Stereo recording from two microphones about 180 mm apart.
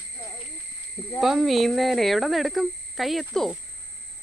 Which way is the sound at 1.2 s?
Centre (ahead or behind).